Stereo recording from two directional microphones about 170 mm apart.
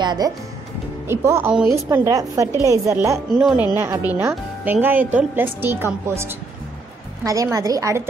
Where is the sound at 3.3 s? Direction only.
5° right (ahead or behind).